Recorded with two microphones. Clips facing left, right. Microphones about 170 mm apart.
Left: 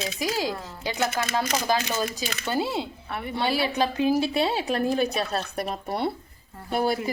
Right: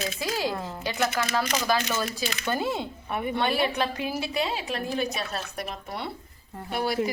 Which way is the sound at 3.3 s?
35° left (ahead or behind).